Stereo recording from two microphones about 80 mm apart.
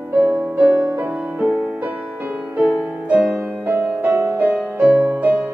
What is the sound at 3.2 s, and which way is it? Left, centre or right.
Music, centre.